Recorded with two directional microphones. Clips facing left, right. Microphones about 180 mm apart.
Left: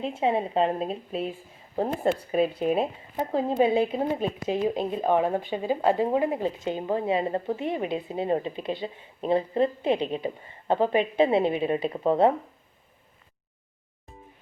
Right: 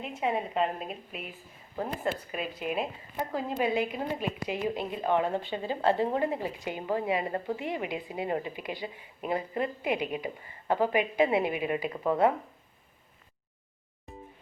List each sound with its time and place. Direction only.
0.0 s a woman's voice: 30° left (ahead or behind)